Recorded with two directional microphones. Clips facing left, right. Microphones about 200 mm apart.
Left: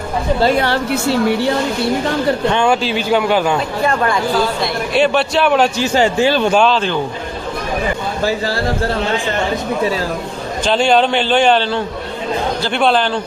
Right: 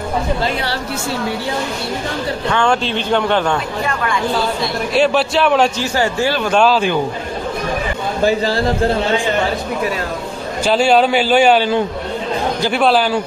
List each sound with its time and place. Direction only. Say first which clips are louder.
2.6 s speech: left 2 dB; 5° left (ahead or behind)
4.9 s a man's voice: even; centre (ahead or behind)
5.8 s a man's voice: left 3 dB; 20° left (ahead or behind)
6.5 s a man's voice: even; centre (ahead or behind)
10.6 s a man's voice: right 1 dB; 5° right (ahead or behind)